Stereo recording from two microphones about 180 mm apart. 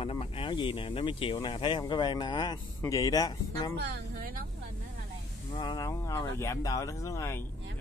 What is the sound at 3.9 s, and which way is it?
Speech, 75° right (ahead or behind).